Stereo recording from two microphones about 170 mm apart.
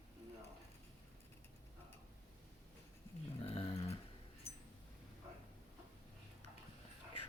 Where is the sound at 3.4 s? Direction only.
35° left (ahead or behind).